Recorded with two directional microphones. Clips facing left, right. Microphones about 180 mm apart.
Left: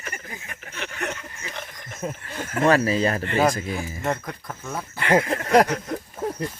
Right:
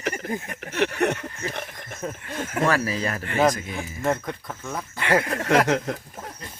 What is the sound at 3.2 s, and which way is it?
Speech, centre (ahead or behind).